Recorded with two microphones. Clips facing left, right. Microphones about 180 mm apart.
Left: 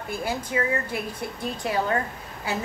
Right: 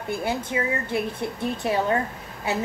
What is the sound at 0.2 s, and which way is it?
A woman's voice, 25° right (ahead or behind).